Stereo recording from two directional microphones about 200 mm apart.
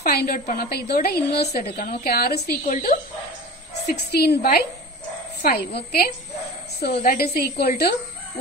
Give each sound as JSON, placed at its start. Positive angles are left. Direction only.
{"t": 0.0, "sound": "a woman's voice", "side_deg": 50}
{"t": 3.9, "sound": "a woman's voice", "side_deg": 55}